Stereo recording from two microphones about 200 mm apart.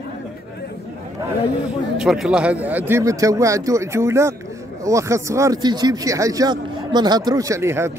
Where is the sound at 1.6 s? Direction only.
5° right (ahead or behind).